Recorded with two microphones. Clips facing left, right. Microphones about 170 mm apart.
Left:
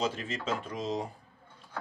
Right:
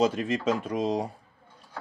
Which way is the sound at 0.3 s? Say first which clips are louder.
Right 8 dB; 55° right (ahead or behind).